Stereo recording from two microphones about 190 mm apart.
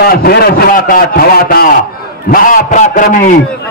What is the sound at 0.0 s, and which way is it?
A man's voice, 55° left (ahead or behind).